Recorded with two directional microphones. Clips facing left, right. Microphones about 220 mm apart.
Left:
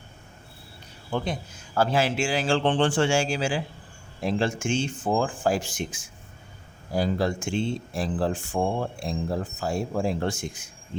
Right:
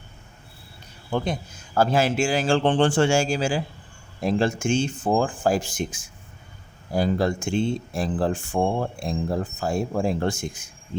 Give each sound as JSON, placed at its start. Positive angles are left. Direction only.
{"t": 1.1, "sound": "speech", "side_deg": -45}